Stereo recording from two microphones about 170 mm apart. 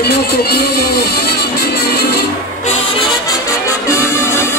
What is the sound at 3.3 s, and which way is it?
Music, 15° left (ahead or behind).